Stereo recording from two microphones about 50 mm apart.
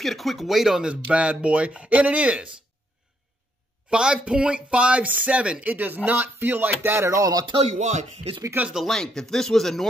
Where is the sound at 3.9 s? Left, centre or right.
Centre; by 7.0 s right.